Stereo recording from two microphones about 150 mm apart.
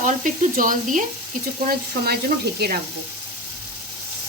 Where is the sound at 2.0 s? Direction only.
85° right.